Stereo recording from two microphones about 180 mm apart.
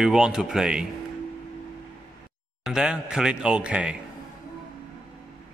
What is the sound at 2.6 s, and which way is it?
A man's voice, 5° right (ahead or behind).